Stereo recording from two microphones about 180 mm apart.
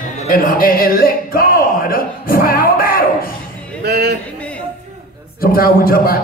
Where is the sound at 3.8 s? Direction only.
60° right (ahead or behind).